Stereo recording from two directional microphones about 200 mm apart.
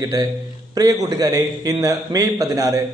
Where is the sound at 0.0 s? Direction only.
20° right (ahead or behind).